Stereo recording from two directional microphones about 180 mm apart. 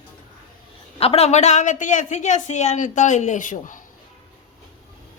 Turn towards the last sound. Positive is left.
turn(degrees=45)  # may be behind; listen again after turning